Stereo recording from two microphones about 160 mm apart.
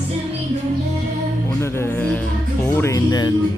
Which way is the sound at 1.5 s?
15° left (ahead or behind).